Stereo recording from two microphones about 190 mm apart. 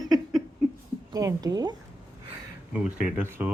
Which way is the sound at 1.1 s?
20° right (ahead or behind).